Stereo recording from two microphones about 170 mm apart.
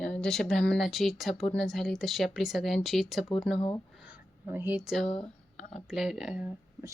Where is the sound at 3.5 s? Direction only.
30° left (ahead or behind).